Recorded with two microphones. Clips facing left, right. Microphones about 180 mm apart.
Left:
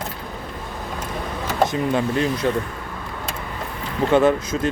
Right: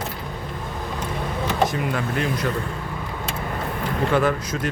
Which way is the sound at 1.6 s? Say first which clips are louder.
Left 5 dB; 25° left (ahead or behind).